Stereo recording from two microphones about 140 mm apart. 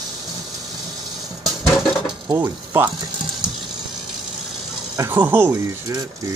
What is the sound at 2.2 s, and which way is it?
Speech, 30° right (ahead or behind).